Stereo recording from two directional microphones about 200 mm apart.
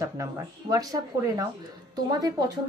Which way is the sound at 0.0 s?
15° right (ahead or behind).